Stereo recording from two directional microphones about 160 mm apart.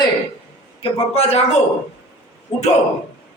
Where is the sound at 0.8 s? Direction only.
40° left (ahead or behind).